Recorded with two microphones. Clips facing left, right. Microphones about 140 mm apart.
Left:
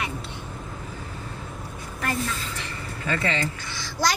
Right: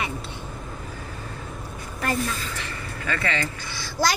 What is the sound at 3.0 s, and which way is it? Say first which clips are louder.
Speech: left 1 dB; 25° left (ahead or behind).